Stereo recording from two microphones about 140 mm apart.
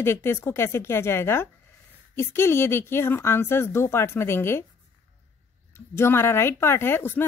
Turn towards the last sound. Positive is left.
turn(degrees=15)  # may be behind; listen again after turning